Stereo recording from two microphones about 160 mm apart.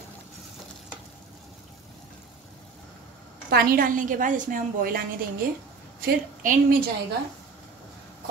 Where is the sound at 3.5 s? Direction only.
65° right (ahead or behind).